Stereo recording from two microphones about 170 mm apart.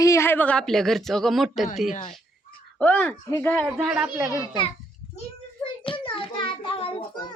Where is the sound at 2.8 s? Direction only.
10° left (ahead or behind).